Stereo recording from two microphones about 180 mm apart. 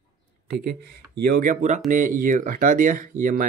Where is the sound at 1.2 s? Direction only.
55° right (ahead or behind).